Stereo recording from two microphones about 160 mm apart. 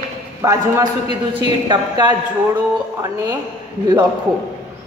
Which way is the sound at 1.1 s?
30° right (ahead or behind).